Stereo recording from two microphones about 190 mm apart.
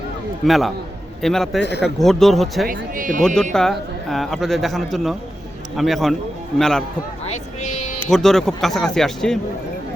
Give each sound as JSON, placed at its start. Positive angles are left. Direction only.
{"t": 0.4, "sound": "a man's voice", "side_deg": 0}
{"t": 2.6, "sound": "speech", "side_deg": -45}
{"t": 3.2, "sound": "a man's voice", "side_deg": 5}
{"t": 7.3, "sound": "a sound", "side_deg": 40}
{"t": 8.1, "sound": "a man's voice", "side_deg": 0}